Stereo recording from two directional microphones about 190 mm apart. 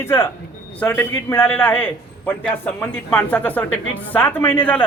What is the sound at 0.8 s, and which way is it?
A woman's voice, 10° left (ahead or behind).